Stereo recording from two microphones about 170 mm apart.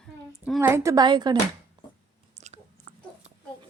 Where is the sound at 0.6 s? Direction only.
15° right (ahead or behind).